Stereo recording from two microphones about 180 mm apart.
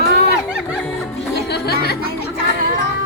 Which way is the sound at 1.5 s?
60° left (ahead or behind).